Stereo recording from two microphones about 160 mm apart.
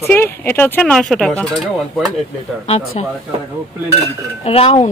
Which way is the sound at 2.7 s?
40° left (ahead or behind).